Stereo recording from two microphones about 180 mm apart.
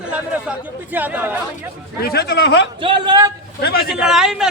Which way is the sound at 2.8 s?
25° right (ahead or behind).